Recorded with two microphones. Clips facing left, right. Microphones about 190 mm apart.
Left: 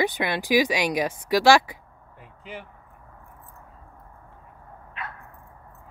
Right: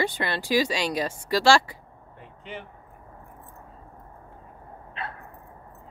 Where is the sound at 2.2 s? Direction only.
5° left (ahead or behind).